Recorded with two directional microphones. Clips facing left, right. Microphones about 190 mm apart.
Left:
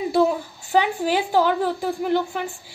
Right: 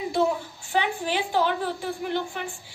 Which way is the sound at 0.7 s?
40° left (ahead or behind).